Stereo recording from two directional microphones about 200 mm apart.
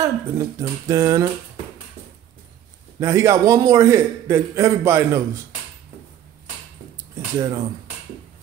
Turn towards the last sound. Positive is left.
turn(degrees=-15)  # may be behind; listen again after turning